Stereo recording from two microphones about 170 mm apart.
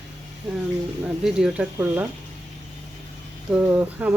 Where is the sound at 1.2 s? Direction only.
5° right (ahead or behind).